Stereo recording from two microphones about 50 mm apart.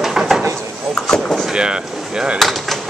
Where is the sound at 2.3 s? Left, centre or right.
Centre.